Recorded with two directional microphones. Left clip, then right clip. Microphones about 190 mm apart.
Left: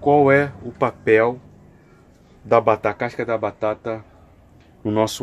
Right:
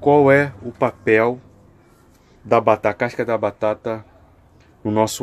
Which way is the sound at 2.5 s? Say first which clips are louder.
Right 1 dB; 15° right (ahead or behind).